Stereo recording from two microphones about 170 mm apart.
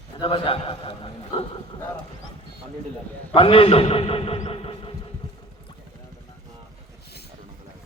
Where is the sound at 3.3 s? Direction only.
30° left (ahead or behind).